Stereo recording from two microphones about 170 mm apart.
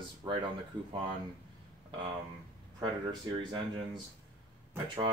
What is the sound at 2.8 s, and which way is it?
Speech, 25° right (ahead or behind).